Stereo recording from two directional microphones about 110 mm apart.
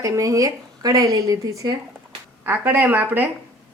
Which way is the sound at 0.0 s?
30° right (ahead or behind).